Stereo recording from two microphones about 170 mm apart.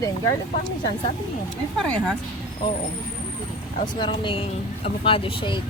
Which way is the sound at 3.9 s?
30° left (ahead or behind).